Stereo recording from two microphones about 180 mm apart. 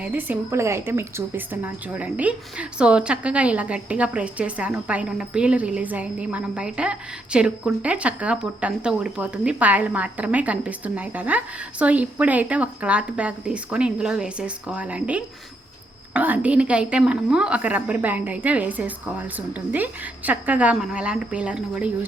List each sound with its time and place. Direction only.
0.0 s speech: 10° right (ahead or behind)